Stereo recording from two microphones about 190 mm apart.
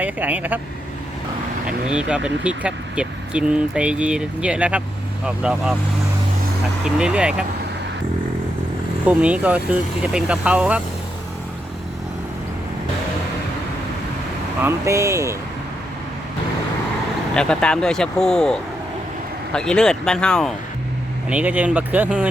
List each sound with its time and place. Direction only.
0.0 s speech: 10° right (ahead or behind)
1.6 s speech: 5° right (ahead or behind)
6.8 s speech: 5° right (ahead or behind)
9.0 s speech: 5° right (ahead or behind)
14.6 s speech: 15° right (ahead or behind)
17.3 s speech: 5° left (ahead or behind)
21.2 s speech: 10° right (ahead or behind)